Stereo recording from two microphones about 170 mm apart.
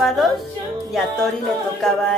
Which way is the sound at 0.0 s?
Centre (ahead or behind).